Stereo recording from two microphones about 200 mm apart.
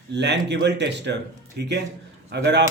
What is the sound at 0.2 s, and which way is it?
Speech, 60° right (ahead or behind).